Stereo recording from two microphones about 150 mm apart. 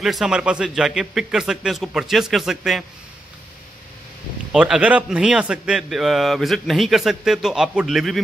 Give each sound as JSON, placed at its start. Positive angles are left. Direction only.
{"t": 0.0, "sound": "a man's voice", "side_deg": 0}
{"t": 4.5, "sound": "a man's voice", "side_deg": -5}